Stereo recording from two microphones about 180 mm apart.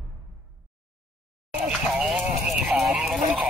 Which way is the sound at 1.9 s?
5° right (ahead or behind).